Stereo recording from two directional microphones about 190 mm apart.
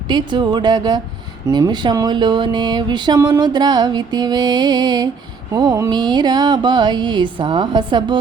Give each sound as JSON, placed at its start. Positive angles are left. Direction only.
{"t": 0.1, "sound": "speech", "side_deg": -25}